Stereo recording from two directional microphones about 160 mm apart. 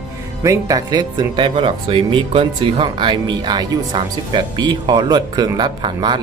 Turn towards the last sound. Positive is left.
turn(degrees=-25)  # may be behind; listen again after turning